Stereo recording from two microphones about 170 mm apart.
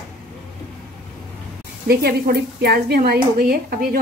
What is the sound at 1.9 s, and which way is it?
A woman's voice, 65° right (ahead or behind).